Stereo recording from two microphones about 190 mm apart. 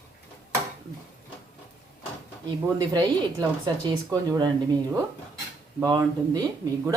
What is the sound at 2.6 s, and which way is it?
Speech, 20° right (ahead or behind).